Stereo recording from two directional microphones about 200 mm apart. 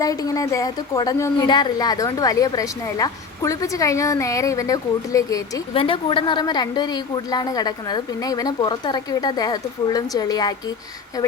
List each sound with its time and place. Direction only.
0.0 s a woman's voice: 15° left (ahead or behind)